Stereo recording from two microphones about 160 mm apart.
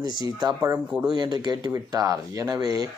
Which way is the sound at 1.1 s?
25° right (ahead or behind).